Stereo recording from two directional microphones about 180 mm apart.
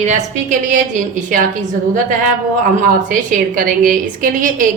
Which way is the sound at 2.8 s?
45° right (ahead or behind).